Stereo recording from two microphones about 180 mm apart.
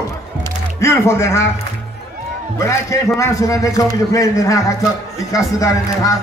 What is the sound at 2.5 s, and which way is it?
A man's voice, 15° left (ahead or behind).